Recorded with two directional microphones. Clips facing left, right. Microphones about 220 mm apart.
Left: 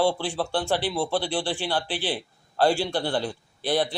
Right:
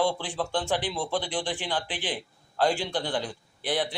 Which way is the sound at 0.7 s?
10° left (ahead or behind).